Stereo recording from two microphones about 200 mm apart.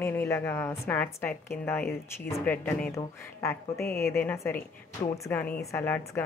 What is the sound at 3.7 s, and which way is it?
Speech, 50° left (ahead or behind).